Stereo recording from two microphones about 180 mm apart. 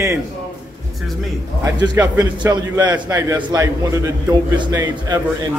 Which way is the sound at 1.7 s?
20° right (ahead or behind).